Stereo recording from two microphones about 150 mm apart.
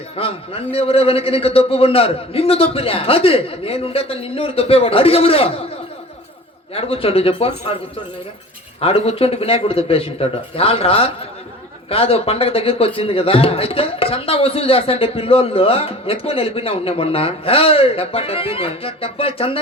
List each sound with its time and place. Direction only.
0.2 s a man's voice: 40° left (ahead or behind)
6.7 s a man's voice: 40° left (ahead or behind)
8.8 s a man's voice: 40° left (ahead or behind)